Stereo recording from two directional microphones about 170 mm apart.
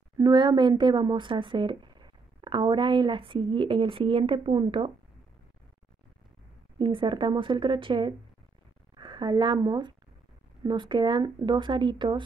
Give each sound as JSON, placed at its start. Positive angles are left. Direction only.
{"t": 0.2, "sound": "speech", "side_deg": -25}
{"t": 6.8, "sound": "a woman's voice", "side_deg": -30}